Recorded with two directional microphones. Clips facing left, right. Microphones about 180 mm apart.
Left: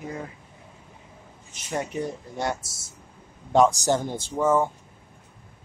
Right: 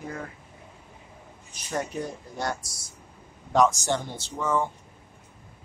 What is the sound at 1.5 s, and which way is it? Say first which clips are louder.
A man's voice: left 2 dB; 20° left (ahead or behind).